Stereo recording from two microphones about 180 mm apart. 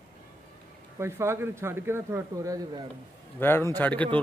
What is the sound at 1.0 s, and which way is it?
Speech, 15° right (ahead or behind).